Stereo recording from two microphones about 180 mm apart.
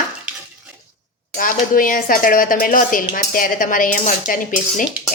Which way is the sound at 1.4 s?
50° left (ahead or behind).